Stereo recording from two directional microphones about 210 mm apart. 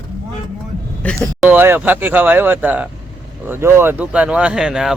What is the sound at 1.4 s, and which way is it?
Speech, 10° right (ahead or behind).